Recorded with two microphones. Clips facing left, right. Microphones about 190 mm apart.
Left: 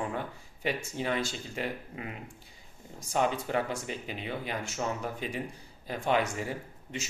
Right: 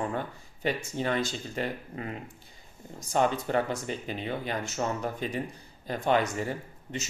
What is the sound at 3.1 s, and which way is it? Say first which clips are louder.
Speech: right 3 dB; 5° left (ahead or behind).